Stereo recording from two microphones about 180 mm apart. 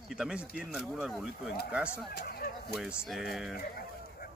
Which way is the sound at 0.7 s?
Centre (ahead or behind).